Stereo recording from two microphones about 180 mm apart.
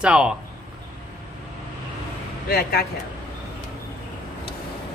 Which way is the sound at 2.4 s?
60° left (ahead or behind).